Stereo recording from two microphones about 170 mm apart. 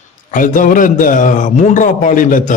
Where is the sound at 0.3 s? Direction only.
50° left (ahead or behind).